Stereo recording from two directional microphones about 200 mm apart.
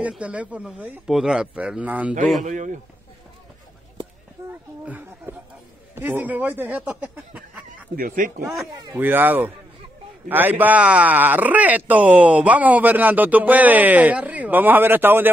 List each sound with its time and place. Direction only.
0.0 s speech: 5° right (ahead or behind)
2.4 s speech: 35° right (ahead or behind)
4.5 s speech: 10° right (ahead or behind)
7.9 s speech: 45° right (ahead or behind)
8.5 s speech: 5° right (ahead or behind)